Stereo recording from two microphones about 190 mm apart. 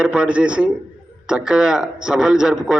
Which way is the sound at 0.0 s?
5° right (ahead or behind).